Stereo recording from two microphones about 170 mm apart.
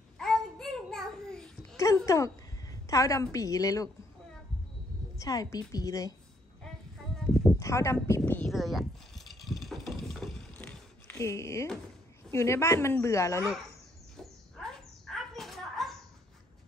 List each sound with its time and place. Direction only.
0.2 s a sound: centre (ahead or behind)
2.0 s a woman's voice: 20° left (ahead or behind)
5.1 s a woman's voice: 20° left (ahead or behind)
7.5 s speech: 15° left (ahead or behind)
8.2 s bicycle: 5° left (ahead or behind)
12.3 s a woman's voice: 15° left (ahead or behind)
14.1 s a sound: 5° left (ahead or behind)